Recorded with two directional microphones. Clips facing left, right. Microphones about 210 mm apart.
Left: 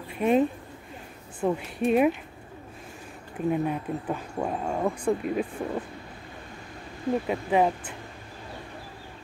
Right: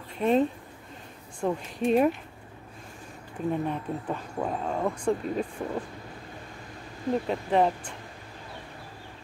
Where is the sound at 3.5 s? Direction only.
5° left (ahead or behind).